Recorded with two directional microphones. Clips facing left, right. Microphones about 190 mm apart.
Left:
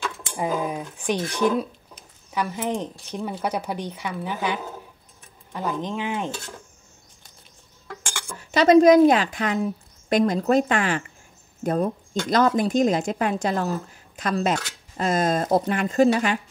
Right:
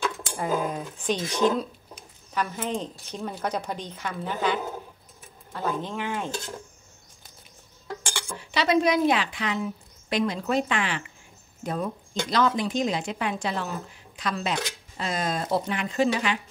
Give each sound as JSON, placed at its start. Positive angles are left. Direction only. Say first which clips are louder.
{"t": 0.4, "sound": "speech", "louder": "left 2 dB", "side_deg": 15}
{"t": 8.3, "sound": "speech", "louder": "left 8 dB", "side_deg": 45}